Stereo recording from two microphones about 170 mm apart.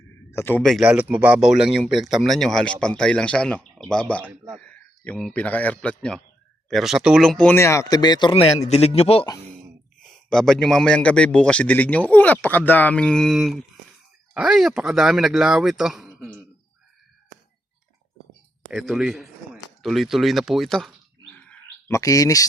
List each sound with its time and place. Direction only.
0.3 s speech: 15° left (ahead or behind)
0.6 s a man's voice: centre (ahead or behind); by 8.6 s 30° left (ahead or behind)
8.6 s a man's voice: 40° left (ahead or behind)
10.0 s a man's voice: 5° left (ahead or behind)
18.7 s speech: centre (ahead or behind)
21.8 s speech: 20° left (ahead or behind)